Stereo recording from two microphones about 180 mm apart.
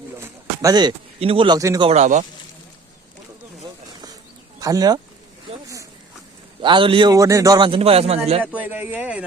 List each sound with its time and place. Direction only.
0.2 s speech: 20° right (ahead or behind)
1.9 s speech: 40° right (ahead or behind)
4.6 s a man's voice: 20° right (ahead or behind)
5.6 s a sound: 15° right (ahead or behind)
6.6 s a man's voice: 25° right (ahead or behind)
8.4 s speech: 10° right (ahead or behind)